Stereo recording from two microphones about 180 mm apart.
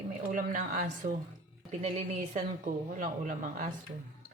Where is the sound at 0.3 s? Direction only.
45° right (ahead or behind).